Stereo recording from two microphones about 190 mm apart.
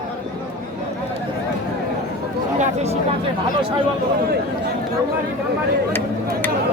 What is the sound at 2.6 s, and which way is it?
Speech, 35° right (ahead or behind).